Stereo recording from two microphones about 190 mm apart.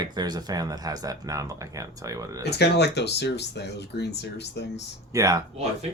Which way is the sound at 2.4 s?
60° left (ahead or behind).